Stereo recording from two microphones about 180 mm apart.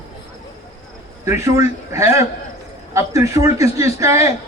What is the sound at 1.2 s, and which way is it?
A man's voice, 15° right (ahead or behind).